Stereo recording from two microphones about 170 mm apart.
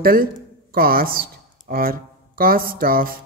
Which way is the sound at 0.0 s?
60° right (ahead or behind).